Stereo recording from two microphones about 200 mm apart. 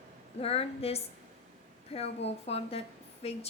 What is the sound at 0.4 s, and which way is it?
A woman's voice, 30° left (ahead or behind).